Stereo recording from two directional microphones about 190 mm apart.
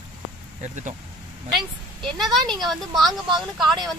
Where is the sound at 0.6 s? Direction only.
40° right (ahead or behind).